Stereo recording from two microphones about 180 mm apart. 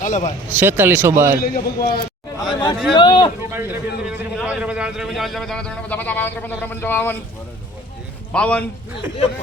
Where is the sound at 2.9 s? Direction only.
25° left (ahead or behind).